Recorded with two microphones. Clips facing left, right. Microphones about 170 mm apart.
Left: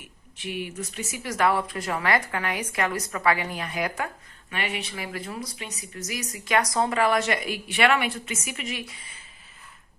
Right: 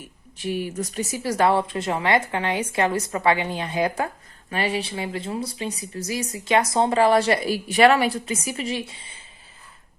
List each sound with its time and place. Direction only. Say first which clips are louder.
0.0 s speech: right 6 dB; 40° right (ahead or behind)